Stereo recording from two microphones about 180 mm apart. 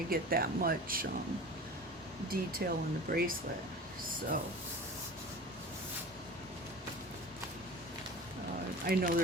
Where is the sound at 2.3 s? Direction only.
55° right (ahead or behind).